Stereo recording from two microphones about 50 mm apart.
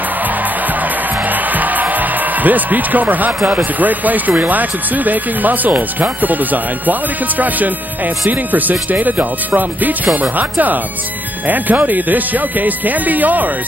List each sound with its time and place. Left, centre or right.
1.3 s speech: right